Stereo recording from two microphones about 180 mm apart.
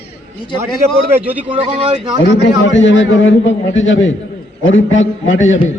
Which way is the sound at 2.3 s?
90° left.